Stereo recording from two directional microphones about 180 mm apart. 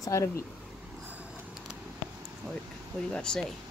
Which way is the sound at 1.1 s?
10° right (ahead or behind).